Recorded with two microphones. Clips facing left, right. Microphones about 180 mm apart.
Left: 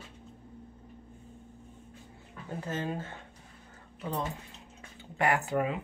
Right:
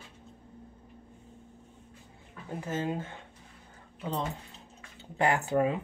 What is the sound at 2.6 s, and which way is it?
Speech, 15° right (ahead or behind).